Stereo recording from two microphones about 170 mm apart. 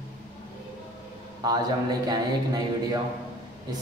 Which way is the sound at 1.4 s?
25° right (ahead or behind).